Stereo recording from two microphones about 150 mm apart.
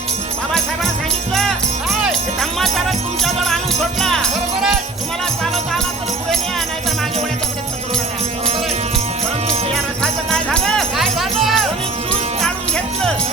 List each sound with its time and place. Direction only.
1.3 s jingle bell: centre (ahead or behind)
4.0 s music: 5° left (ahead or behind)
9.7 s jingle bell: 5° left (ahead or behind)